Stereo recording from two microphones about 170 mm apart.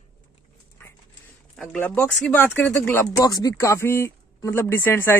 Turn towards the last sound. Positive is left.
turn(degrees=15)  # may be behind; listen again after turning